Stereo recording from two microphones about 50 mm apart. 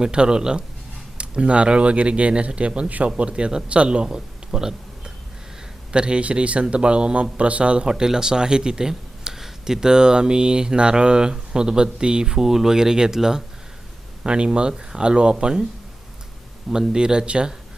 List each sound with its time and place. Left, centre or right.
0.0 s a man's voice: centre
16.6 s speech: centre